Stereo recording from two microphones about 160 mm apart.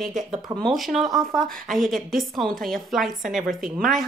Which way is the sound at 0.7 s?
Centre (ahead or behind).